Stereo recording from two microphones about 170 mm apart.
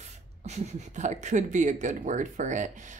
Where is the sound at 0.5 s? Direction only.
45° right (ahead or behind).